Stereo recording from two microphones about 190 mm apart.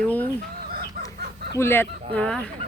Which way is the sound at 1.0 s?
50° right (ahead or behind).